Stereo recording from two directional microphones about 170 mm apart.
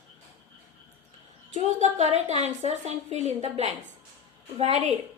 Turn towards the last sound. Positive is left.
turn(degrees=-35)  # may be behind; listen again after turning